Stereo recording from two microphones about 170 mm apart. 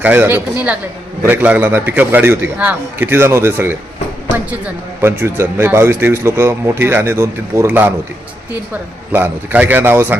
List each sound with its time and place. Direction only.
0.0 s a man's voice: 10° right (ahead or behind)
9.1 s a man's voice: 10° right (ahead or behind)